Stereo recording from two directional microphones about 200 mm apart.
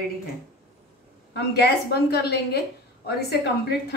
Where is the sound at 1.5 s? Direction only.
55° left (ahead or behind).